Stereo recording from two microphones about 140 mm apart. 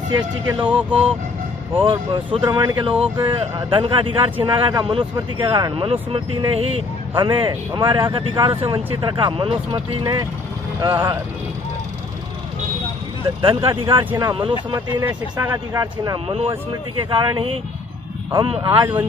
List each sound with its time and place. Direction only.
0.7 s speech: 10° right (ahead or behind)
1.8 s speech: 40° right (ahead or behind)
13.4 s speech: 40° right (ahead or behind)
15.0 s speech: 15° right (ahead or behind)
16.3 s speech: 40° right (ahead or behind)
18.7 s speech: 15° right (ahead or behind)